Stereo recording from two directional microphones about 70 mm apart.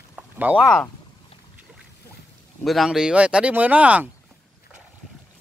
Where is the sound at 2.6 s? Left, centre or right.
Centre.